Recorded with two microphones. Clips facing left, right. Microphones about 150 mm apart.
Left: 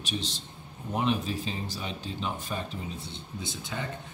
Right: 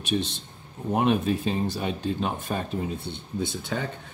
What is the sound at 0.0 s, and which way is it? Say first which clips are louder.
Speech: right 7 dB; 55° right (ahead or behind).